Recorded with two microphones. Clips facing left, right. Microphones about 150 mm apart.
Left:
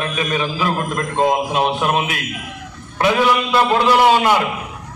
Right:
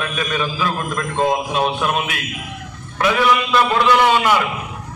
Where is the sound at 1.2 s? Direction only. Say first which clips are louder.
Left 1 dB; 10° left (ahead or behind).